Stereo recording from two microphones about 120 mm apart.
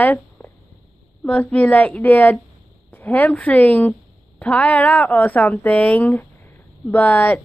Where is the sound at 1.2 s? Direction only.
5° left (ahead or behind).